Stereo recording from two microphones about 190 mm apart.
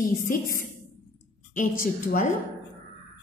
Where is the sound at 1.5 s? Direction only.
45° left (ahead or behind).